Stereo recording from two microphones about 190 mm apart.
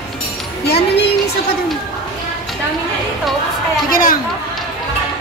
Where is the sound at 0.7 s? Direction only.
55° left (ahead or behind).